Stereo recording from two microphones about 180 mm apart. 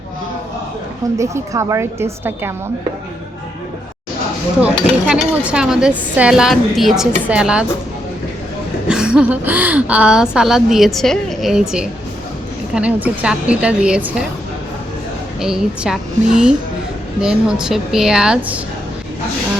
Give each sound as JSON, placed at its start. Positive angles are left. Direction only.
{"t": 1.2, "sound": "a woman's voice", "side_deg": -15}
{"t": 4.6, "sound": "speech", "side_deg": -5}
{"t": 8.9, "sound": "a woman's voice", "side_deg": -5}
{"t": 15.4, "sound": "speech", "side_deg": -5}